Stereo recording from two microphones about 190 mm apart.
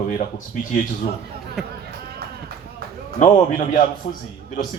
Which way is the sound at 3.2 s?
45° left (ahead or behind).